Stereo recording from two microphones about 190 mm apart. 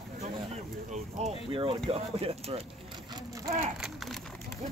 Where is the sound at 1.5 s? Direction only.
30° right (ahead or behind).